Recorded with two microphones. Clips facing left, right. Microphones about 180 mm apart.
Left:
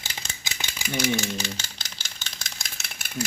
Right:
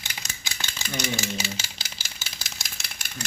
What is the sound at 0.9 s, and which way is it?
Engine, centre (ahead or behind).